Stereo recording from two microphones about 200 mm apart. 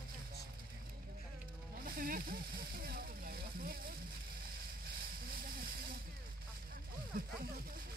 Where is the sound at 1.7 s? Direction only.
45° right (ahead or behind).